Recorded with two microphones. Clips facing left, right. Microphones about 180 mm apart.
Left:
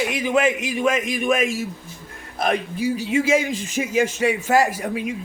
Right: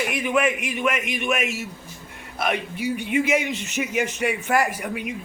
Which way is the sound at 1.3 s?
90° left.